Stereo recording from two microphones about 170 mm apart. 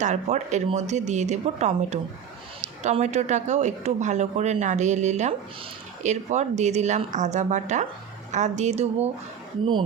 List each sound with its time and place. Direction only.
0.0 s a woman's voice: 45° right (ahead or behind)